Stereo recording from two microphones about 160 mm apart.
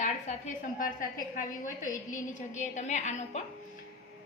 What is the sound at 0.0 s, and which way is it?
A woman's voice, 50° left (ahead or behind).